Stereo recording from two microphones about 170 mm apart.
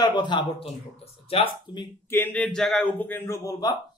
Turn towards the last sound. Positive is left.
turn(degrees=20)  # may be behind; listen again after turning